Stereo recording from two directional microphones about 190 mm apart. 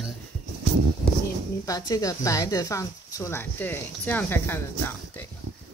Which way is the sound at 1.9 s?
20° left (ahead or behind).